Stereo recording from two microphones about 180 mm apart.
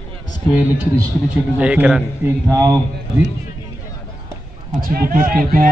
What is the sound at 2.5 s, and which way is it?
Speech, 20° right (ahead or behind).